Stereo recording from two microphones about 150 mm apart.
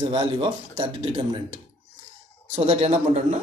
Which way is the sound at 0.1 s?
35° right (ahead or behind).